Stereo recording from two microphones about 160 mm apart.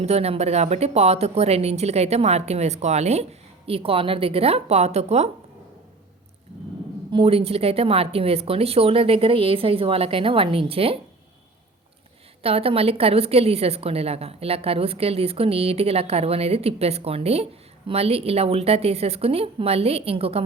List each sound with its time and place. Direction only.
0.0 s a woman's voice: 40° right (ahead or behind)
7.1 s a woman's voice: 35° right (ahead or behind)
12.4 s a woman's voice: 35° right (ahead or behind)